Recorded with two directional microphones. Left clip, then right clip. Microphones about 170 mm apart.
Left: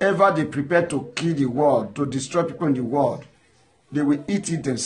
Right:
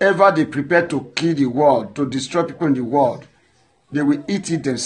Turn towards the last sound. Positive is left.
turn(degrees=-20)  # may be behind; listen again after turning